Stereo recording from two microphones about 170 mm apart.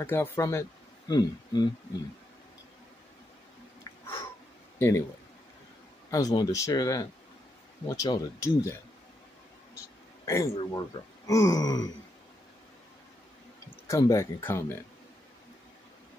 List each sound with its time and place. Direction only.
0.0 s speech: 15° left (ahead or behind)
3.8 s a sound: 30° left (ahead or behind)
4.7 s speech: 15° left (ahead or behind)
6.0 s speech: 20° left (ahead or behind)
9.8 s a sound: 20° left (ahead or behind)
10.7 s speech: 20° left (ahead or behind)
13.8 s speech: 20° left (ahead or behind)